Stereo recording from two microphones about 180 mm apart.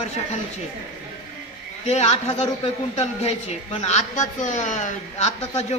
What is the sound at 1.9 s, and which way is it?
A man's voice, 35° left (ahead or behind).